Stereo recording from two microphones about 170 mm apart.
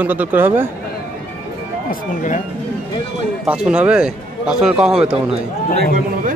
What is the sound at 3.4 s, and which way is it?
Speech, 5° right (ahead or behind).